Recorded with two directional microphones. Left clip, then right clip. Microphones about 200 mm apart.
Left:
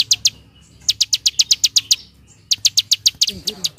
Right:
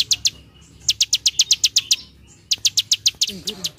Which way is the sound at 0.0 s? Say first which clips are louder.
Left 3 dB; 10° left (ahead or behind).